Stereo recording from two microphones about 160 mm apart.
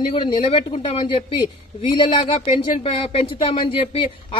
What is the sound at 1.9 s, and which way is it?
Speech, 30° left (ahead or behind).